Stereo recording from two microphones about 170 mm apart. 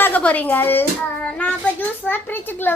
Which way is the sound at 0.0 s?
10° left (ahead or behind).